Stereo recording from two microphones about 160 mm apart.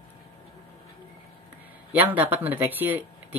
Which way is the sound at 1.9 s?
10° right (ahead or behind).